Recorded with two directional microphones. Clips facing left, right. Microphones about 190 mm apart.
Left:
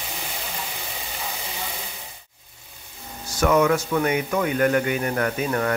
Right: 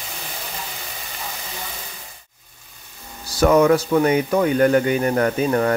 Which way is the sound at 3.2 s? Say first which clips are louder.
Right 4 dB; 35° right (ahead or behind).